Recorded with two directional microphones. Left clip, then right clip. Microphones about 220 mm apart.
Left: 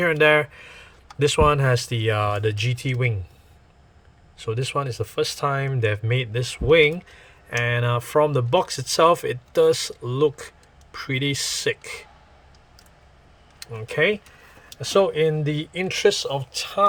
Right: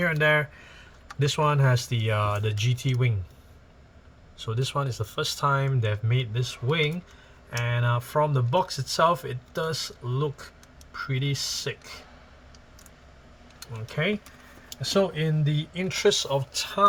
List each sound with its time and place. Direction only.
0.0 s speech: 40° left (ahead or behind)
4.4 s speech: 25° left (ahead or behind)
13.6 s speech: 40° left (ahead or behind)